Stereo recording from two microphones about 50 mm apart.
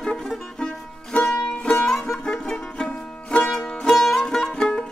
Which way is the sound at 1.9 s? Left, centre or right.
Centre.